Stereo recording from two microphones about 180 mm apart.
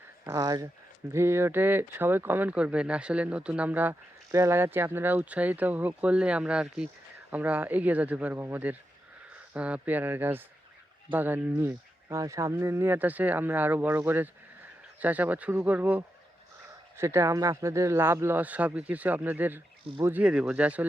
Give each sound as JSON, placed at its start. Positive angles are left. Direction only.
{"t": 0.3, "sound": "speech", "side_deg": -20}